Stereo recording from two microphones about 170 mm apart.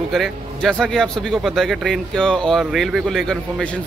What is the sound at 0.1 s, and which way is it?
A man's voice, centre (ahead or behind).